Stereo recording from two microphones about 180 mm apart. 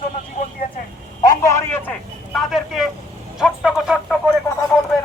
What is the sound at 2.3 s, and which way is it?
Vehicle, centre (ahead or behind).